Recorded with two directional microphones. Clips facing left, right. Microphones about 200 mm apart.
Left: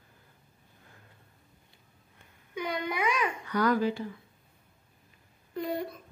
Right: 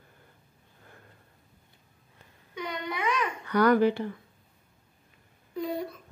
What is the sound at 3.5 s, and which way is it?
Speech, 65° right (ahead or behind).